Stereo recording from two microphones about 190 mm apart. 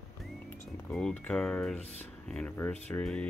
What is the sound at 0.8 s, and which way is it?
Speech, 5° left (ahead or behind).